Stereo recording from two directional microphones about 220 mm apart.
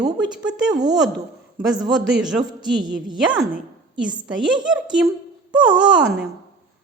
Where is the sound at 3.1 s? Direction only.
20° right (ahead or behind).